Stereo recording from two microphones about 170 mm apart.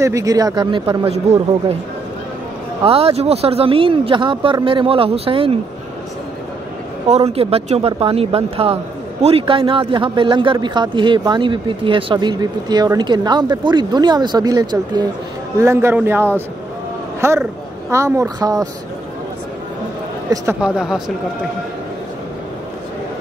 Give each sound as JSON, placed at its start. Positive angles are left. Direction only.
{"t": 0.0, "sound": "a man's voice", "side_deg": -20}
{"t": 2.8, "sound": "speech", "side_deg": -35}
{"t": 7.1, "sound": "a man's voice", "side_deg": -40}
{"t": 20.6, "sound": "speech", "side_deg": -5}